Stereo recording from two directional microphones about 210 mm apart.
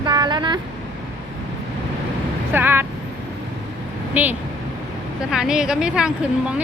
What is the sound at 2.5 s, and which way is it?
Vehicle, 10° right (ahead or behind).